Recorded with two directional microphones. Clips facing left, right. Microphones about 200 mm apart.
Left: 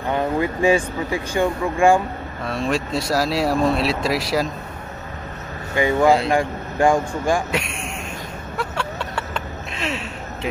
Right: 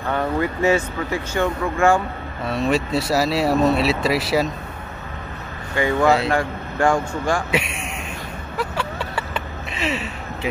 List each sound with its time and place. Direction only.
0.0 s speech: 15° left (ahead or behind)
2.4 s speech: 5° right (ahead or behind)
5.8 s speech: 15° left (ahead or behind)
6.0 s speech: centre (ahead or behind)
6.3 s speech: 15° left (ahead or behind)
8.5 s a sound: 5° right (ahead or behind)